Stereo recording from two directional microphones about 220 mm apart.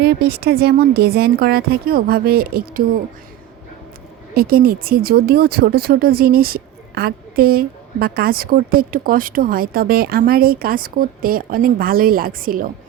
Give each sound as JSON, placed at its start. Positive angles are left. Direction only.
{"t": 0.0, "sound": "speech", "side_deg": -50}
{"t": 4.4, "sound": "speech", "side_deg": -45}